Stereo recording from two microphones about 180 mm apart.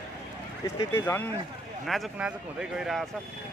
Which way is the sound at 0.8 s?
15° left (ahead or behind).